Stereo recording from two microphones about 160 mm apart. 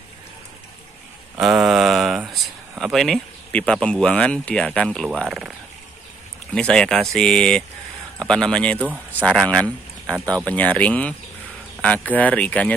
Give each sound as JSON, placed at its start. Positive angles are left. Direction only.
{"t": 1.4, "sound": "a sound", "side_deg": -5}
{"t": 2.8, "sound": "speech", "side_deg": 0}
{"t": 6.5, "sound": "speech", "side_deg": 5}